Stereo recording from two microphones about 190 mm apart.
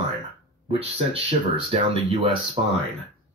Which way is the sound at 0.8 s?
30° right (ahead or behind).